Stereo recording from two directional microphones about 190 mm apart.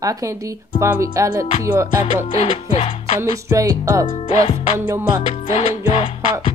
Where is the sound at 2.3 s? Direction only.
30° left (ahead or behind).